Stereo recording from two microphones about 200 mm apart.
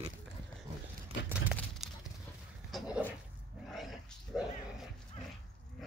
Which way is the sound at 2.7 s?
Centre (ahead or behind).